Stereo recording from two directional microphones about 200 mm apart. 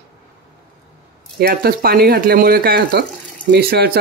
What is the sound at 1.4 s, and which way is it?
Speech, 50° right (ahead or behind).